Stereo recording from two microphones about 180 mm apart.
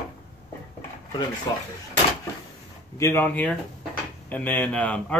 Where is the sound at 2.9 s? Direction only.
15° left (ahead or behind).